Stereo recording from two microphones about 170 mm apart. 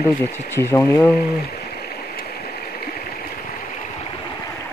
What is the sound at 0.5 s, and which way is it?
Speech, 15° left (ahead or behind).